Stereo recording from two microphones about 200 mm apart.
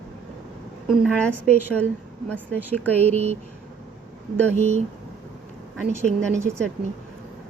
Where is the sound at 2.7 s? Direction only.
10° left (ahead or behind).